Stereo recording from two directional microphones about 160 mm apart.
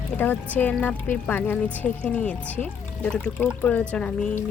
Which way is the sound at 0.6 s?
10° left (ahead or behind).